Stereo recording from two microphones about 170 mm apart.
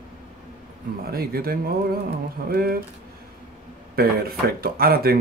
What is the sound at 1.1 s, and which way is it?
Speech, 65° right (ahead or behind).